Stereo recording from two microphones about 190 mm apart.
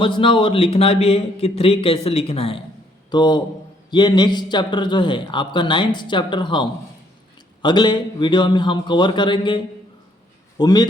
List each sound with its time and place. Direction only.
0.0 s a man's voice: 25° left (ahead or behind)
10.6 s a man's voice: 20° left (ahead or behind)